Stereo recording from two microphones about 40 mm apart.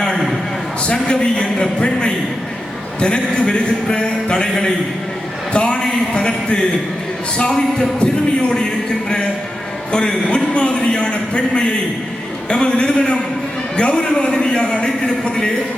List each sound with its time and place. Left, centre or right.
0.9 s a man's voice: left
9.9 s a man's voice: left